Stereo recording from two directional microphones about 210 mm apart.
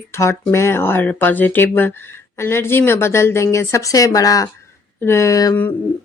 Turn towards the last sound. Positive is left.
turn(degrees=15)  # may be behind; listen again after turning